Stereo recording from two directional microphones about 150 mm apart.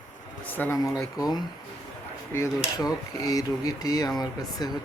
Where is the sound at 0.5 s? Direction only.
15° left (ahead or behind).